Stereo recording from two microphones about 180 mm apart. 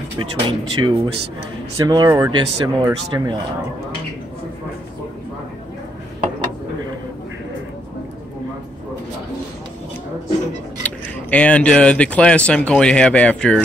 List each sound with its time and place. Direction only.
0.2 s speech: 25° right (ahead or behind)
10.8 s speech: 10° left (ahead or behind)